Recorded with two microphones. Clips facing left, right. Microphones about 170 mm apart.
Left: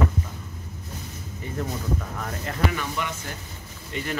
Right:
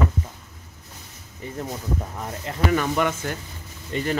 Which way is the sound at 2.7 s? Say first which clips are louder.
Right 10 dB; 50° right (ahead or behind).